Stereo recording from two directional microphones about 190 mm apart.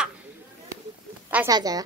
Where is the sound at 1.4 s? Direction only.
20° right (ahead or behind).